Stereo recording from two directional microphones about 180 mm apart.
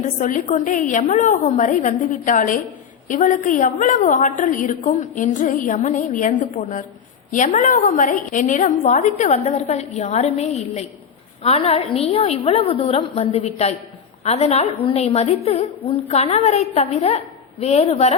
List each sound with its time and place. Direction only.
0.0 s a woman's voice: 45° left (ahead or behind)